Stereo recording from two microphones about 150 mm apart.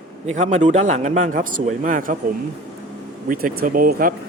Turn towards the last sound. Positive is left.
turn(degrees=-70)  # may be behind; listen again after turning